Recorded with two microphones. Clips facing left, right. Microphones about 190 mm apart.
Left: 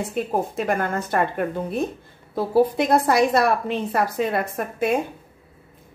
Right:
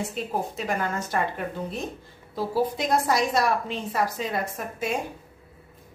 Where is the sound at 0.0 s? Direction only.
55° left (ahead or behind).